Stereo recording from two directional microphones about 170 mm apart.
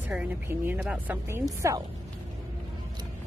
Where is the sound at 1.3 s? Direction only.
15° right (ahead or behind).